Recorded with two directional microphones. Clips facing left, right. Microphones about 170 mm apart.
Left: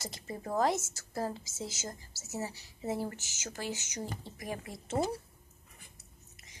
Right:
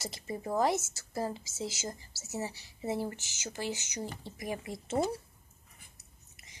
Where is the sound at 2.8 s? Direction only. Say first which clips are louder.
Right 1 dB; 10° right (ahead or behind).